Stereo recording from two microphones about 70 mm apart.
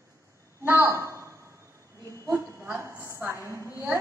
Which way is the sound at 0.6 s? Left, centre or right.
Right.